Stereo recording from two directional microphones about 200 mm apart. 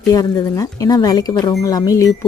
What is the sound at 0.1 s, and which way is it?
Speech, 15° left (ahead or behind).